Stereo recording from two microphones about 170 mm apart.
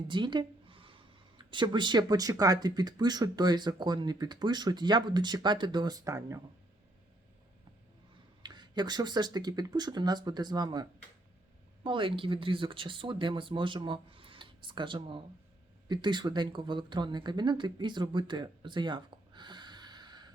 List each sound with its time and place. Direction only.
0.1 s speech: 30° right (ahead or behind)
8.4 s speech: 25° right (ahead or behind)